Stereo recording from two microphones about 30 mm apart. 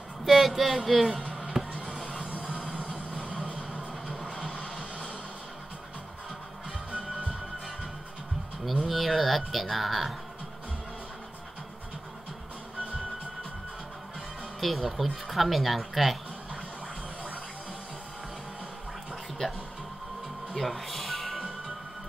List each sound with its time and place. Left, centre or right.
0.2 s speech: centre
1.5 s music: centre
2.1 s music: right
2.8 s train: right
3.4 s music: right
8.8 s a sound: centre
14.6 s speech: centre
20.5 s music: centre